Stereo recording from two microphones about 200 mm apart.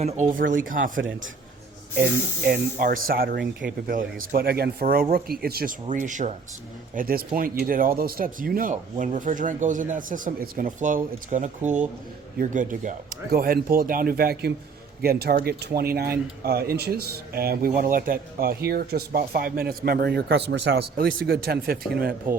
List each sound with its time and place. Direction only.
0.3 s speech: 45° right (ahead or behind)
0.9 s a man's voice: 75° right (ahead or behind)
2.0 s speech: 45° right (ahead or behind)